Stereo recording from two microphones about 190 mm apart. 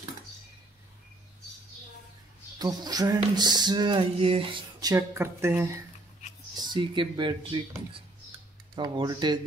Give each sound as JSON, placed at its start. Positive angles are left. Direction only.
{"t": 2.6, "sound": "speech", "side_deg": -20}
{"t": 6.5, "sound": "speech", "side_deg": -25}